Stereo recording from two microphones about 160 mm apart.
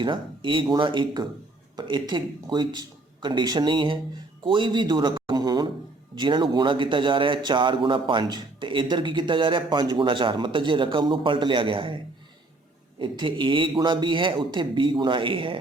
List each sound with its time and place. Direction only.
0.0 s speech: 30° right (ahead or behind)
4.4 s a sound: 30° right (ahead or behind)
6.1 s a man's voice: 30° right (ahead or behind)
13.0 s a man's voice: 30° right (ahead or behind)